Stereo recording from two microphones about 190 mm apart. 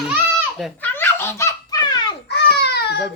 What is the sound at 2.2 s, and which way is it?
Babbling, 60° left (ahead or behind).